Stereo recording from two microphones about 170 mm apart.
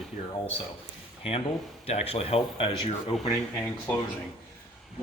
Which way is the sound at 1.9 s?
35° left (ahead or behind).